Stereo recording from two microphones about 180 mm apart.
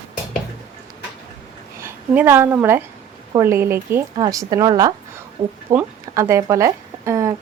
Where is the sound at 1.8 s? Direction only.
10° right (ahead or behind).